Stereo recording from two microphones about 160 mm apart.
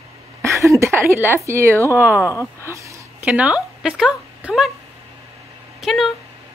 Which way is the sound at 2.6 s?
20° right (ahead or behind).